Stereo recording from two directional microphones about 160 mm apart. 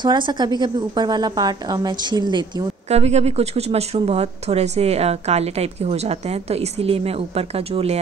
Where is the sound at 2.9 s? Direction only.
40° right (ahead or behind).